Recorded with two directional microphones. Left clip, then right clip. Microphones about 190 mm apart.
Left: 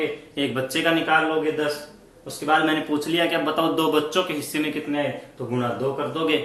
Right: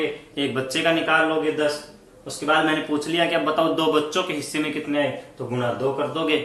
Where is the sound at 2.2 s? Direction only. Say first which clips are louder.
Even; centre (ahead or behind).